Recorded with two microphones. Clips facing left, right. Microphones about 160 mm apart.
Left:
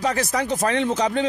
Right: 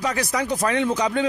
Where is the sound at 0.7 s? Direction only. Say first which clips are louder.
Right 1 dB; 30° left (ahead or behind).